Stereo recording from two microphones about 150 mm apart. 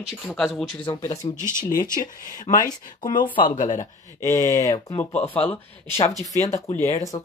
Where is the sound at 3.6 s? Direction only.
55° left (ahead or behind).